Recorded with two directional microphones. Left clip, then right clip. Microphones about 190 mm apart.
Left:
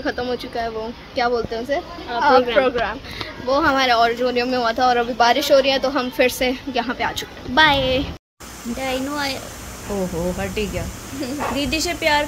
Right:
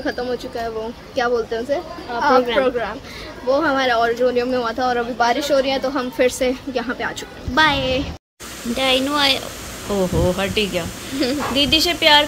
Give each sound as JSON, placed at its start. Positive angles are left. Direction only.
{"t": 0.0, "sound": "speech", "side_deg": 15}
{"t": 1.1, "sound": "speech", "side_deg": 0}
{"t": 8.7, "sound": "speech", "side_deg": -5}
{"t": 11.2, "sound": "a woman's voice", "side_deg": -55}
{"t": 11.5, "sound": "speech", "side_deg": 5}